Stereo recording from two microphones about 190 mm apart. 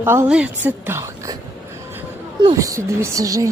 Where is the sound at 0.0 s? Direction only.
10° right (ahead or behind).